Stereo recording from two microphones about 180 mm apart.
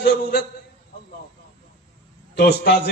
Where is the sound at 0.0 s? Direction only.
60° left (ahead or behind).